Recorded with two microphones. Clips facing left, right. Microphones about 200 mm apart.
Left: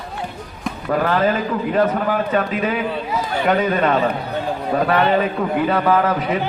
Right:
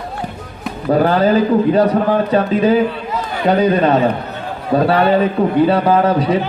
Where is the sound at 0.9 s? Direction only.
35° right (ahead or behind).